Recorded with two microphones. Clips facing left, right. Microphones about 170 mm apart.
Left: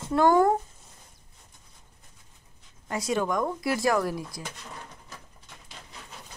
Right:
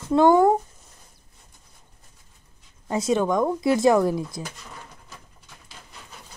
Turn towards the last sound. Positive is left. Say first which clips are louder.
# right 6 dB
turn(degrees=-25)  # may be behind; listen again after turning